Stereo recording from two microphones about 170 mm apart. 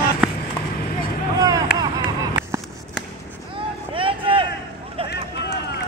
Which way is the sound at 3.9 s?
30° right (ahead or behind).